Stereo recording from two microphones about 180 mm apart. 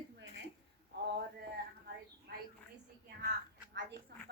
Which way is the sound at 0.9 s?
65° right (ahead or behind).